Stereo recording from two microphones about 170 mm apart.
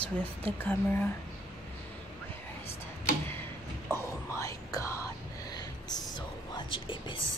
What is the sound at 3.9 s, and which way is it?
Whispering, 15° left (ahead or behind).